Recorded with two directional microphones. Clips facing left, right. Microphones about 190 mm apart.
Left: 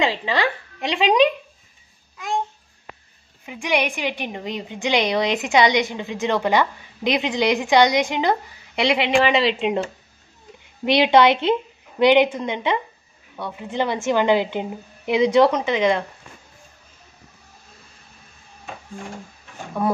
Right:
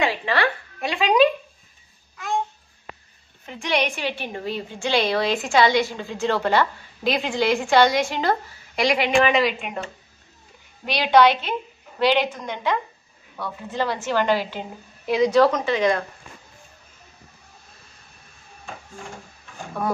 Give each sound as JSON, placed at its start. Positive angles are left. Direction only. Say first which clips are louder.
{"t": 0.0, "sound": "a woman's voice", "louder": "left 1 dB", "side_deg": 15}
{"t": 3.4, "sound": "a woman's voice", "louder": "left 1 dB", "side_deg": 10}
{"t": 10.9, "sound": "a woman's voice", "louder": "left 2 dB", "side_deg": 20}